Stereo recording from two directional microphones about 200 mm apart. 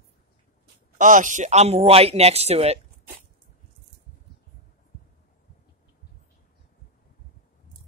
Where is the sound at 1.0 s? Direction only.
40° right (ahead or behind).